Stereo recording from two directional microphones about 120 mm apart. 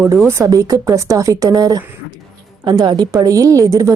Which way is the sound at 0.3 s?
25° right (ahead or behind).